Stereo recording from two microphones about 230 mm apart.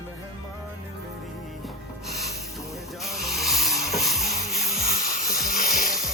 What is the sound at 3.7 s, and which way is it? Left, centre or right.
Music, centre.